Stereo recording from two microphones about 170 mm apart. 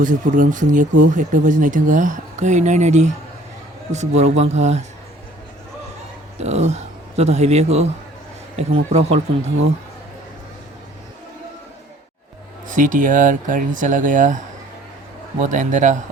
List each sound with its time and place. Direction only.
0.0 s speech: 50° right (ahead or behind)
6.4 s speech: 40° right (ahead or behind)
12.6 s speech: 50° right (ahead or behind)